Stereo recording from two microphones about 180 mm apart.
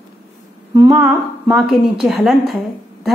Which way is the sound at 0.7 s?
15° right (ahead or behind).